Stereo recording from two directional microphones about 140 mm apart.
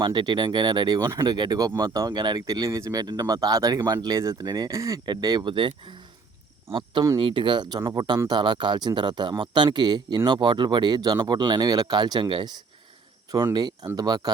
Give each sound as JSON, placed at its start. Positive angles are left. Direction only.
{"t": 0.0, "sound": "speech", "side_deg": -35}
{"t": 7.2, "sound": "speech", "side_deg": -35}